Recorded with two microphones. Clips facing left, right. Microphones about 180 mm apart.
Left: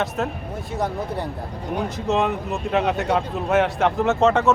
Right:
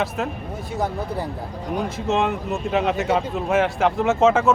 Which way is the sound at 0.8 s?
Centre (ahead or behind).